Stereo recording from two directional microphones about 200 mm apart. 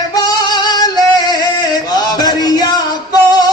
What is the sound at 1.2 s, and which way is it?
Male singing, 20° left (ahead or behind).